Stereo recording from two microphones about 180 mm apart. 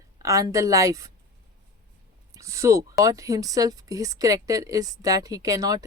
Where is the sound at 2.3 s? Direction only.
15° right (ahead or behind).